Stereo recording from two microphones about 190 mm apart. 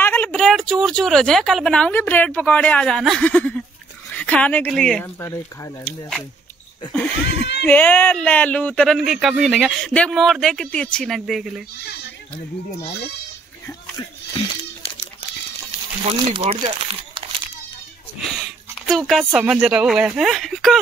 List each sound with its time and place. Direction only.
0.0 s speech: 10° left (ahead or behind)
5.2 s speech: 15° left (ahead or behind)
16.1 s speech: 30° right (ahead or behind)
18.9 s speech: centre (ahead or behind)